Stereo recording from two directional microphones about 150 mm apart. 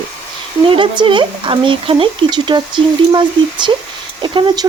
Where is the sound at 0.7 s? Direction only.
35° right (ahead or behind).